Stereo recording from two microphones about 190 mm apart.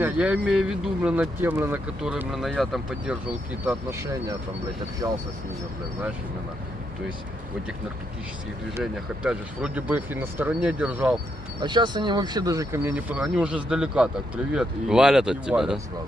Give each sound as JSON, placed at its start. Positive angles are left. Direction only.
{"t": 0.0, "sound": "speech", "side_deg": -5}
{"t": 3.6, "sound": "speech", "side_deg": -15}
{"t": 8.8, "sound": "speech", "side_deg": -5}
{"t": 11.6, "sound": "speech", "side_deg": -25}